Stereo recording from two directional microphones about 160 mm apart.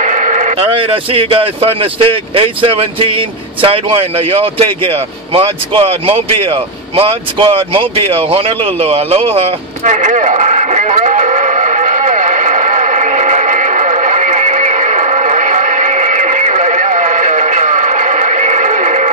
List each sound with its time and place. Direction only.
0.0 s sheep: 50° right (ahead or behind)
0.7 s speech: 35° right (ahead or behind)
9.8 s a sound: 50° right (ahead or behind)